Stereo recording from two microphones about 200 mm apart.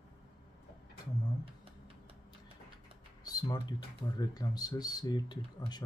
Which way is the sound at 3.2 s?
20° left (ahead or behind).